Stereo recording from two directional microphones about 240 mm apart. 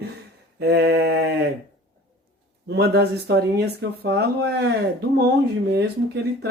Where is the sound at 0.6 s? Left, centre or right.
Right.